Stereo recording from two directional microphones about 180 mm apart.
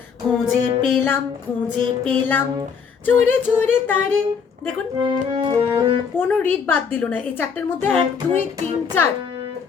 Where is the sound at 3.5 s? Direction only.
10° left (ahead or behind).